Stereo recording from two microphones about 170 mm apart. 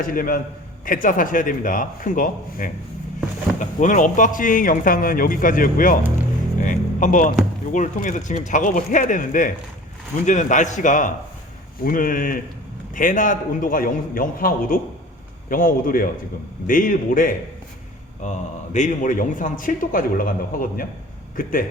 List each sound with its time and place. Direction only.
0.0 s a man's voice: 55° left (ahead or behind)
6.6 s music: 50° left (ahead or behind)
7.7 s a man's voice: 50° left (ahead or behind)